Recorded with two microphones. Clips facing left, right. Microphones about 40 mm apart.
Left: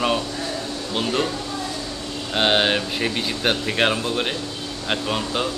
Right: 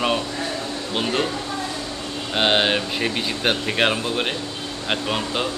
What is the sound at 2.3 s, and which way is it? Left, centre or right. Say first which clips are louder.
A man's voice: even; centre.